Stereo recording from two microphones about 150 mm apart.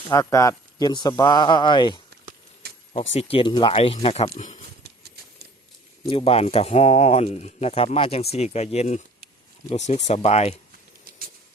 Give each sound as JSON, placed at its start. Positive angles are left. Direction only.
{"t": 0.1, "sound": "speech", "side_deg": 20}
{"t": 2.9, "sound": "speech", "side_deg": 40}
{"t": 6.1, "sound": "speech", "side_deg": 40}